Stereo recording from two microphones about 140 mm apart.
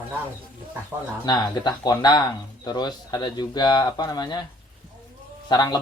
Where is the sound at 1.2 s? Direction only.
30° left (ahead or behind).